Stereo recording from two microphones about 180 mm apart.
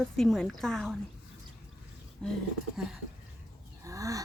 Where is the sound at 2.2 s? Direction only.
Centre (ahead or behind).